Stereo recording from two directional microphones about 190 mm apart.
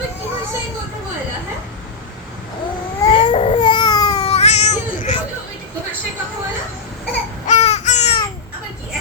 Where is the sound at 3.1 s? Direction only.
25° left (ahead or behind).